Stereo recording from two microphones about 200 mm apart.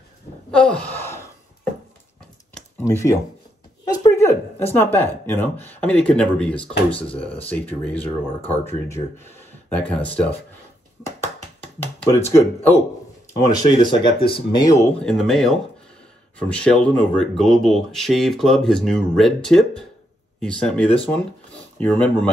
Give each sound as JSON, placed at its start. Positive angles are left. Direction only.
{"t": 0.5, "sound": "a sound", "side_deg": 5}
{"t": 2.8, "sound": "speech", "side_deg": 15}
{"t": 9.8, "sound": "speech", "side_deg": 5}
{"t": 11.1, "sound": "a sound", "side_deg": 10}
{"t": 12.4, "sound": "speech", "side_deg": 10}
{"t": 15.0, "sound": "speech", "side_deg": 5}